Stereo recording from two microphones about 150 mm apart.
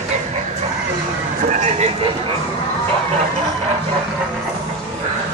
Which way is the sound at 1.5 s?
45° right (ahead or behind).